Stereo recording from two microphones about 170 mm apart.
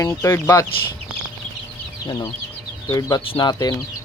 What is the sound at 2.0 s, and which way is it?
Speech, 25° left (ahead or behind).